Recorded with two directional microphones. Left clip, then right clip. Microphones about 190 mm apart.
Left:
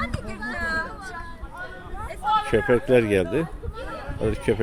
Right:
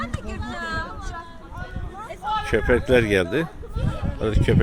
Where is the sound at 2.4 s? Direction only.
5° left (ahead or behind).